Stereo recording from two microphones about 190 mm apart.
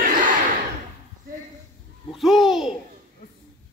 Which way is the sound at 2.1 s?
Centre (ahead or behind).